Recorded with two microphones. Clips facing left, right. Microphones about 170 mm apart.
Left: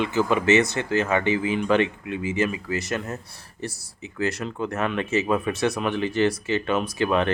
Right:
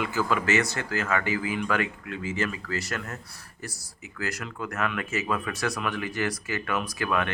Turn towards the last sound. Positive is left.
turn(degrees=25)  # may be behind; listen again after turning